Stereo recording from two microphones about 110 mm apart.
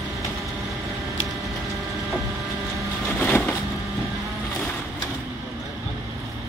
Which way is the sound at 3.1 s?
15° left (ahead or behind).